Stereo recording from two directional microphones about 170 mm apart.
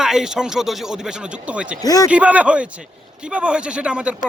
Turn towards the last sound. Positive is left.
turn(degrees=-5)  # may be behind; listen again after turning